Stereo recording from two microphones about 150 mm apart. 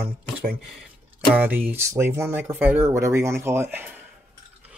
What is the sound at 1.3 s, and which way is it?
Speech, 10° right (ahead or behind).